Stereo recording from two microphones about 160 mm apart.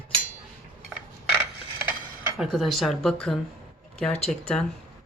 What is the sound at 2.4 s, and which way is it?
Speech, centre (ahead or behind).